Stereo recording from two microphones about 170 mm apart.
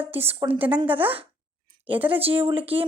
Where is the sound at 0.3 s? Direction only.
30° right (ahead or behind).